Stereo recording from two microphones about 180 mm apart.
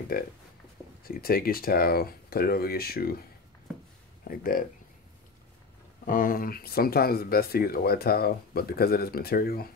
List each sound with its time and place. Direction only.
0.1 s speech: 55° left (ahead or behind)
4.2 s speech: 55° left (ahead or behind)
6.0 s speech: 50° left (ahead or behind)